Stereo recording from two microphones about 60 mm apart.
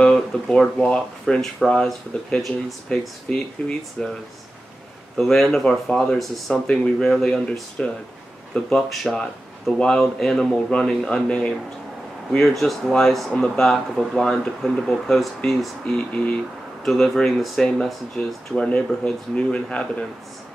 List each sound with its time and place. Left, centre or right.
0.0 s speech: centre
5.1 s speech: centre
6.5 s speech: centre
15.8 s speech: centre
16.8 s speech: centre
18.6 s speech: left